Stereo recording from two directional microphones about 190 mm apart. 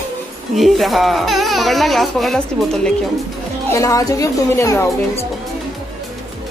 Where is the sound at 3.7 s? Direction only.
15° left (ahead or behind).